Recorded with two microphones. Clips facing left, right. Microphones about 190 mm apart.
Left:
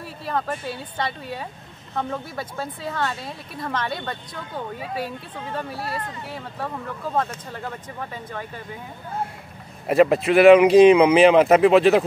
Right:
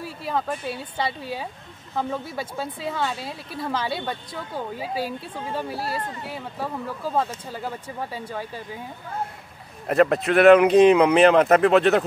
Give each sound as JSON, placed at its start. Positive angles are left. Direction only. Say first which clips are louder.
{"t": 0.0, "sound": "speech", "louder": "even", "side_deg": 0}
{"t": 2.3, "sound": "speech", "louder": "right 1 dB", "side_deg": 0}
{"t": 4.7, "sound": "speech", "louder": "right 1 dB", "side_deg": -30}
{"t": 6.3, "sound": "speech", "louder": "even", "side_deg": -5}
{"t": 9.8, "sound": "speech", "louder": "left 2 dB", "side_deg": 5}